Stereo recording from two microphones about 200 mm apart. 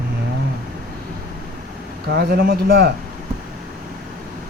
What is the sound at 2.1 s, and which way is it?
Speech, 55° right (ahead or behind).